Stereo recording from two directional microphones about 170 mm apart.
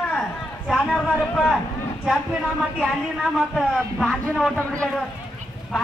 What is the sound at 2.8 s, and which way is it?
Speech, centre (ahead or behind).